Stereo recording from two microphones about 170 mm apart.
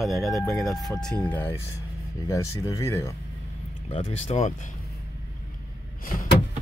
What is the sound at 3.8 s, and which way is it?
Speech, 40° left (ahead or behind).